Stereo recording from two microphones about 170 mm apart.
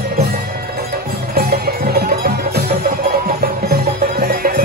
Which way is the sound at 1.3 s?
65° right (ahead or behind).